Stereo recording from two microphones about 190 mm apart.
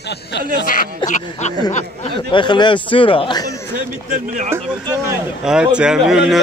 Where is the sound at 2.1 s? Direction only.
25° left (ahead or behind).